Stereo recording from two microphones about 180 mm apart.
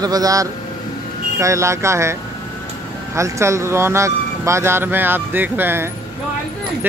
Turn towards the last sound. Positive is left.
turn(degrees=-10)  # may be behind; listen again after turning